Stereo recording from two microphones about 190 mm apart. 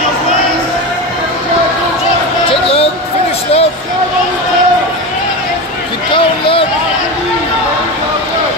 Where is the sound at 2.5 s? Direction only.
30° left (ahead or behind).